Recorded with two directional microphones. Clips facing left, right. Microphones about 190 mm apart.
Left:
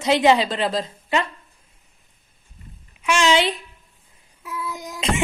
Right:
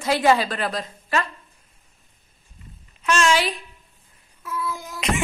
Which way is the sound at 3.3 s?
25° left (ahead or behind).